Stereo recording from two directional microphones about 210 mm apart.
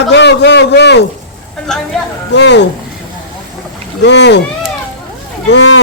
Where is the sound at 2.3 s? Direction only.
55° left (ahead or behind).